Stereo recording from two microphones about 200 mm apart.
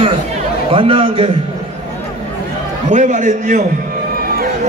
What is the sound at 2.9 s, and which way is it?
Speech, 35° right (ahead or behind).